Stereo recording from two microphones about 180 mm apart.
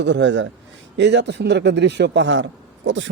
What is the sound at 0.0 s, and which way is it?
A man's voice, 80° right.